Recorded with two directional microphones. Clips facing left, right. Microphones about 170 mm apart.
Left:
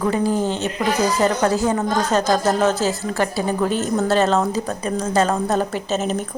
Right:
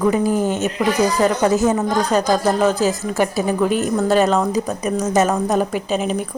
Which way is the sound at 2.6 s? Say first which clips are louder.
Right 2 dB; 15° right (ahead or behind).